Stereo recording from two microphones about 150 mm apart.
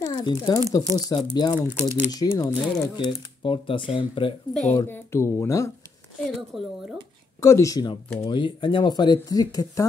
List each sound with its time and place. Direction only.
0.0 s speech: 25° left (ahead or behind)
3.1 s speech: 35° left (ahead or behind)
4.7 s speech: 15° left (ahead or behind)
6.1 s a woman's voice: centre (ahead or behind)
7.3 s speech: 20° left (ahead or behind)